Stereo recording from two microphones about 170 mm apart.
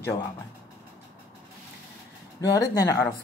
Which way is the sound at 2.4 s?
20° left (ahead or behind).